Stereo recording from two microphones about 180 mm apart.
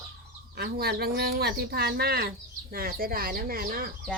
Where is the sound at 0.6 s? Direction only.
60° right (ahead or behind).